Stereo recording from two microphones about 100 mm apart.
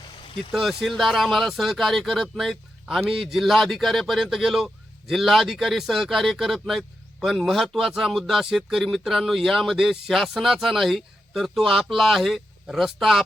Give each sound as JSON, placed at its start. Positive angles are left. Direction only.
{"t": 0.5, "sound": "speech", "side_deg": 0}